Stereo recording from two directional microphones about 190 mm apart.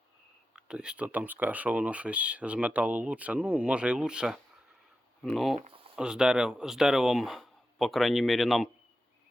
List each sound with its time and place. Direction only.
0.5 s speech: 5° right (ahead or behind)
5.5 s speech: 35° right (ahead or behind)
6.0 s speech: 5° right (ahead or behind)